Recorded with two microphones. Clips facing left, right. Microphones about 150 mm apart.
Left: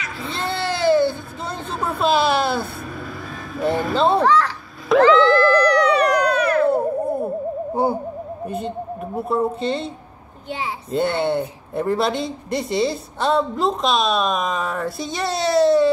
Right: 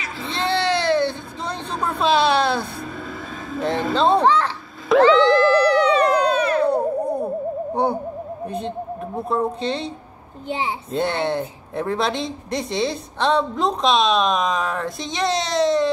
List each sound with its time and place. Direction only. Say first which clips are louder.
0.2 s baby cry: right 3 dB; centre (ahead or behind)
1.8 s a sound: even; 5° left (ahead or behind)
3.9 s speech: right 1 dB; 5° left (ahead or behind)
4.2 s speech: left 1 dB; 25° right (ahead or behind)
4.9 s a sound: even; centre (ahead or behind)
5.4 s music: even; 25° right (ahead or behind)
6.7 s a sound: left 1 dB; 5° left (ahead or behind)
7.7 s owl: left 1 dB; 5° left (ahead or behind)
8.5 s a woman's voice: left 1 dB; 5° left (ahead or behind)
10.9 s speech: left 3 dB; 5° left (ahead or behind)